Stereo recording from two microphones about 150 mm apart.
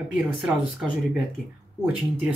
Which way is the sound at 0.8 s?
5° right (ahead or behind).